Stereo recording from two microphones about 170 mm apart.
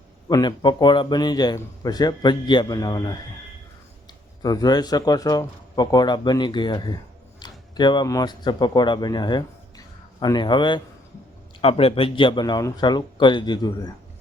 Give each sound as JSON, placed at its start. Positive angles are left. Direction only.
{"t": 0.3, "sound": "a man's voice", "side_deg": 25}
{"t": 4.4, "sound": "a man's voice", "side_deg": 25}